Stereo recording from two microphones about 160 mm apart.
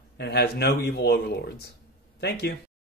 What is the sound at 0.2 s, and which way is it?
Speech, 90° left.